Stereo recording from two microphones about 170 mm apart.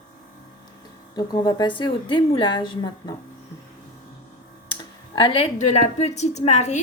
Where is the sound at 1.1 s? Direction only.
25° left (ahead or behind).